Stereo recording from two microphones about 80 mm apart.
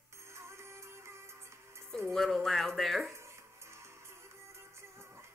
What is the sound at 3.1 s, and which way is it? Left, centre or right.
Music, right.